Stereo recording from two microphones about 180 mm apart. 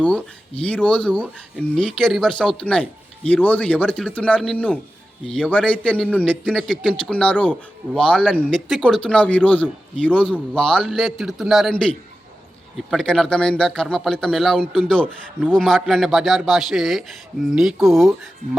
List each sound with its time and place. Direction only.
0.0 s a man's voice: 5° left (ahead or behind)
6.2 s a man's voice: 5° right (ahead or behind)